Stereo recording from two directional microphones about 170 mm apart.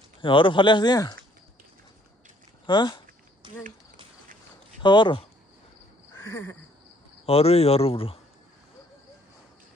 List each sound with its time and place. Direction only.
0.2 s speech: 30° left (ahead or behind)
2.6 s speech: 25° left (ahead or behind)
3.4 s a sound: 25° right (ahead or behind)
4.8 s speech: 25° left (ahead or behind)
6.1 s a sound: 15° left (ahead or behind)
7.2 s speech: 35° left (ahead or behind)